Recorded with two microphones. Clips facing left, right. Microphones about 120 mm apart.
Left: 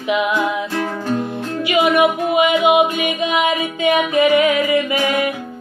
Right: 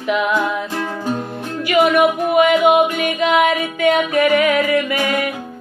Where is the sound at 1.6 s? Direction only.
50° right (ahead or behind).